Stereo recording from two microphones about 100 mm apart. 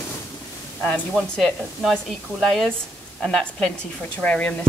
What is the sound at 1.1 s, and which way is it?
Speech, 5° left (ahead or behind).